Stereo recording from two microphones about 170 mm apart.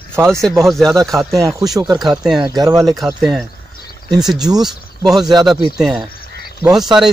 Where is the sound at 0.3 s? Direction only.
Centre (ahead or behind).